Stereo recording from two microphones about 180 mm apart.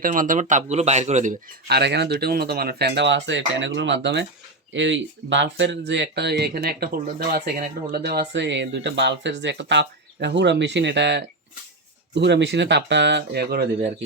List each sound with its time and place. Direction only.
0.0 s speech: 50° right (ahead or behind)
1.6 s speech: 65° right (ahead or behind)
4.7 s speech: 90° right; by 13.7 s 60° right (ahead or behind)